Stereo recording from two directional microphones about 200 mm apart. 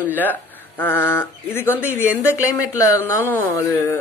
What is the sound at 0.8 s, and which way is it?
Speech, 10° left (ahead or behind).